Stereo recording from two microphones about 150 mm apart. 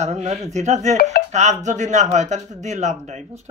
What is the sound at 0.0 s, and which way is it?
Speech, 50° right (ahead or behind).